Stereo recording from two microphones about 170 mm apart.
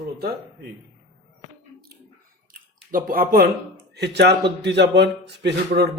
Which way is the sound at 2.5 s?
55° right (ahead or behind).